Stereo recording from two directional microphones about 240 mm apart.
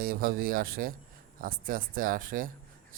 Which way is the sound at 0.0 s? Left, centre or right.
Right.